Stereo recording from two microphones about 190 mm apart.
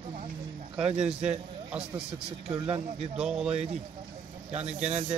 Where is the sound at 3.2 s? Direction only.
5° right (ahead or behind).